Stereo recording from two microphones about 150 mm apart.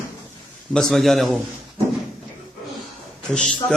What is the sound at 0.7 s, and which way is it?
Speech, 5° left (ahead or behind).